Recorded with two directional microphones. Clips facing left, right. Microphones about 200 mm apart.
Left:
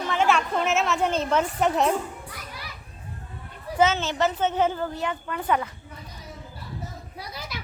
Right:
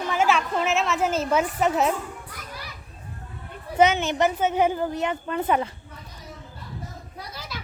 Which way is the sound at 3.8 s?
15° right (ahead or behind).